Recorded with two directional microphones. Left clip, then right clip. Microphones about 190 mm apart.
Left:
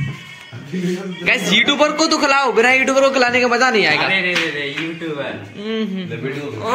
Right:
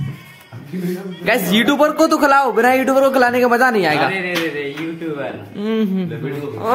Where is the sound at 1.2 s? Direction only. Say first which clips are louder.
Left 1 dB; 45° right (ahead or behind).